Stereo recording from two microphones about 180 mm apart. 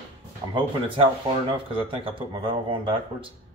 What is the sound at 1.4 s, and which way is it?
Speech, 30° right (ahead or behind).